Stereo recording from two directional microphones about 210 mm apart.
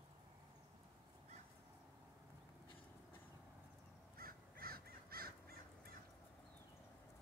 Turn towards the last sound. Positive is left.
turn(degrees=-45)  # may be behind; listen again after turning